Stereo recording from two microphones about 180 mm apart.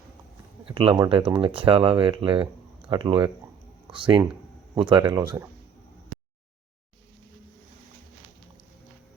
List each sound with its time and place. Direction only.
0.7 s speech: 30° right (ahead or behind)